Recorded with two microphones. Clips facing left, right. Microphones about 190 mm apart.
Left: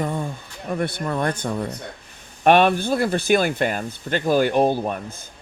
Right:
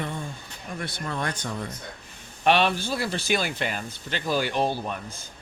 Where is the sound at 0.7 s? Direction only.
60° left (ahead or behind).